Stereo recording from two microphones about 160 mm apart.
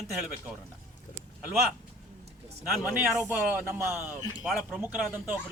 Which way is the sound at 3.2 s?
15° right (ahead or behind).